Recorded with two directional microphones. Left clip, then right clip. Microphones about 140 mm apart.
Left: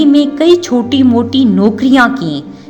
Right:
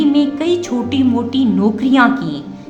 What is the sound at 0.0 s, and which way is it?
A woman's voice, 45° left (ahead or behind).